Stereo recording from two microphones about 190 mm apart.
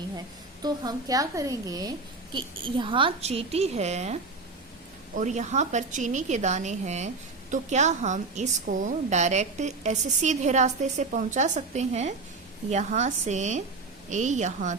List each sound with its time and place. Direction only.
0.6 s a woman's voice: 20° right (ahead or behind); by 14.8 s 40° right (ahead or behind)